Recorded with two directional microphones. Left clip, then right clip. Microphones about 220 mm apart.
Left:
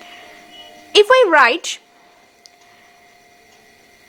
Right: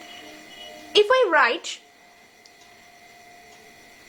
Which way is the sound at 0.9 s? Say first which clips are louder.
Left 7 dB; 45° left (ahead or behind).